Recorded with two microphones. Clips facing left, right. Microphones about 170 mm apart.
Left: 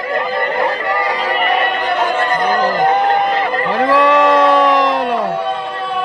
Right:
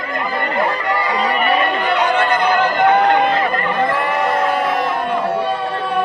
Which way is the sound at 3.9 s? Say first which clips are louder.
Left 7 dB; 90° left.